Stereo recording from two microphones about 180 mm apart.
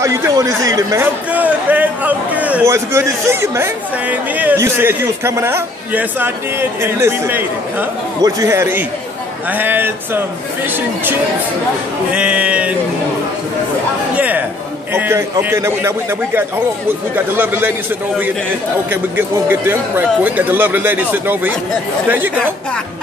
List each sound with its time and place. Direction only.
0.0 s speech: 15° right (ahead or behind)
12.1 s speech: 5° right (ahead or behind)
14.1 s speech: 10° right (ahead or behind)
17.1 s speech: 10° right (ahead or behind)
18.9 s speech: 10° right (ahead or behind)